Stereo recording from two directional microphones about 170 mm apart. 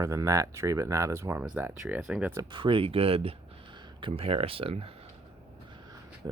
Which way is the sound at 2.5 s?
30° right (ahead or behind).